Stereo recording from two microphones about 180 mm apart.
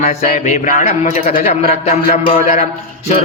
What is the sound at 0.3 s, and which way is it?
A man's voice, 40° left (ahead or behind).